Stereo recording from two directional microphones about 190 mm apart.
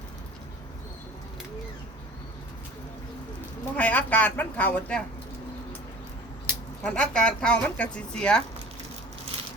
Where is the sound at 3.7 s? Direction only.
10° left (ahead or behind).